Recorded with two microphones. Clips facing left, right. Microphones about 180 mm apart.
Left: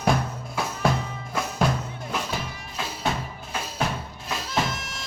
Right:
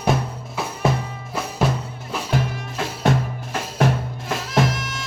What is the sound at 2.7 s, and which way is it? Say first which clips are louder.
Music: right 7 dB; 50° right (ahead or behind).